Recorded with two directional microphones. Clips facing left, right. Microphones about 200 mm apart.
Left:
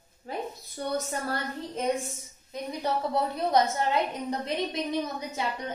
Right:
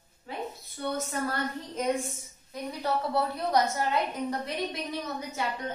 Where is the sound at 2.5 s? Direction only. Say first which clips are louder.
Left 1 dB; 20° left (ahead or behind).